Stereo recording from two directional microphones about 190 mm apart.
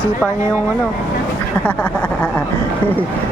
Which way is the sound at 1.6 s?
5° left (ahead or behind).